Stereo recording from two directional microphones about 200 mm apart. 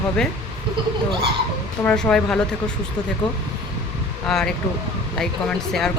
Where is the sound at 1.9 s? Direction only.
5° left (ahead or behind).